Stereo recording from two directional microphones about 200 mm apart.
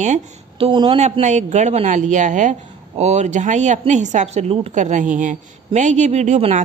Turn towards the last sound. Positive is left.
turn(degrees=-35)  # may be behind; listen again after turning